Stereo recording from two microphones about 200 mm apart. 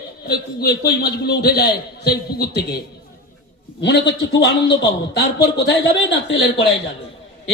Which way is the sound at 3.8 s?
65° left (ahead or behind).